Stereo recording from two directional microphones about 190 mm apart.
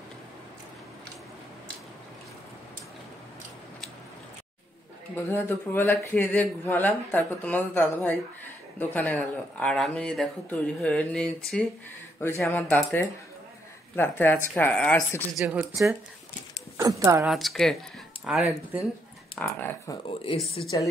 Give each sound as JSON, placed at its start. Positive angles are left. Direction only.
{"t": 5.1, "sound": "speech", "side_deg": 10}
{"t": 15.3, "sound": "speech", "side_deg": -5}
{"t": 16.7, "sound": "speech", "side_deg": -15}
{"t": 17.2, "sound": "speech", "side_deg": 0}
{"t": 19.3, "sound": "speech", "side_deg": 10}
{"t": 20.6, "sound": "a woman's voice", "side_deg": 25}